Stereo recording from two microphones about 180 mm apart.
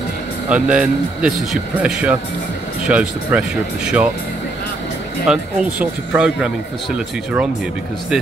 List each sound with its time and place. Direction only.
0.5 s speech: 5° right (ahead or behind)
5.2 s speech: 5° right (ahead or behind)